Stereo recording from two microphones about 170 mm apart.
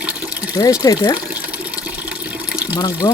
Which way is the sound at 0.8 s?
20° left (ahead or behind).